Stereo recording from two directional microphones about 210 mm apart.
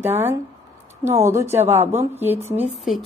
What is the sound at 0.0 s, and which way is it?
A woman's voice, 10° right (ahead or behind).